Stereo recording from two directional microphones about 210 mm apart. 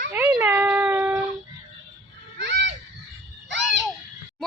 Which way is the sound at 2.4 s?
60° right (ahead or behind).